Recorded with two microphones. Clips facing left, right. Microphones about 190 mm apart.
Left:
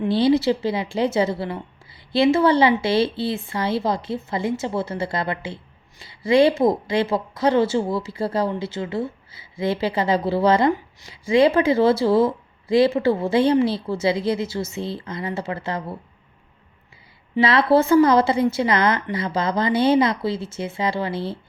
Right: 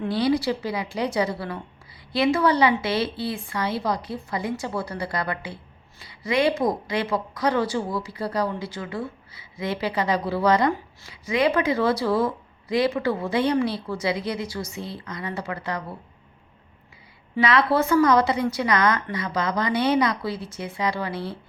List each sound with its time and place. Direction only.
0.1 s speech: 25° left (ahead or behind)
17.4 s speech: 30° left (ahead or behind)